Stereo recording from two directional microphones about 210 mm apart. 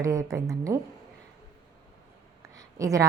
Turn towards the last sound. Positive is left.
turn(degrees=-15)  # may be behind; listen again after turning